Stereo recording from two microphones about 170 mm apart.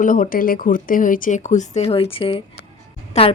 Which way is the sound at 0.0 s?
50° left (ahead or behind).